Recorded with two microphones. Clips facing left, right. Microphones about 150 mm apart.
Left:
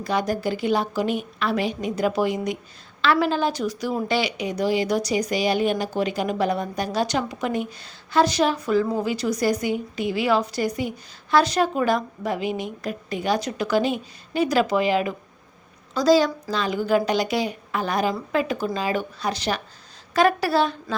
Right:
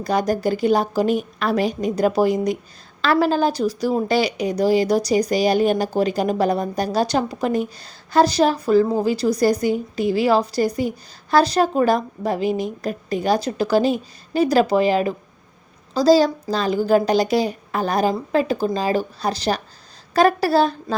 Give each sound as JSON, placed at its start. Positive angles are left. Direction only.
{"t": 0.0, "sound": "a woman's voice", "side_deg": -40}